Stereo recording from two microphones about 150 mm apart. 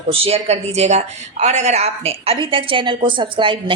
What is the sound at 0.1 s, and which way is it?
Speech, 40° right (ahead or behind).